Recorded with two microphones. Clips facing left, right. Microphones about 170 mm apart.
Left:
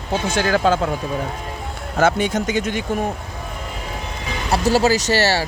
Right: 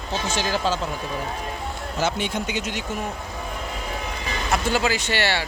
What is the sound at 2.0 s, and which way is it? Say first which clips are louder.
Speech: left 8 dB; 45° left (ahead or behind).